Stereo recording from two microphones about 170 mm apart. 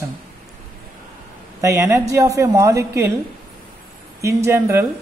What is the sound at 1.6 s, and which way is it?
A woman's voice, 15° right (ahead or behind).